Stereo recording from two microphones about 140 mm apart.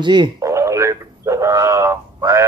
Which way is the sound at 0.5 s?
20° right (ahead or behind).